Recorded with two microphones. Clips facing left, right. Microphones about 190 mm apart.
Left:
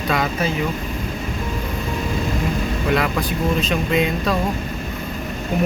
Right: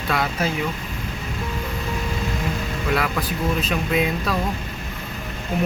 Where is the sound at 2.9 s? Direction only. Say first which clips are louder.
Left 2 dB; 5° right (ahead or behind).